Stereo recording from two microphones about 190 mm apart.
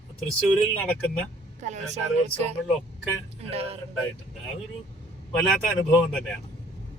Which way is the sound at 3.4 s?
35° right (ahead or behind).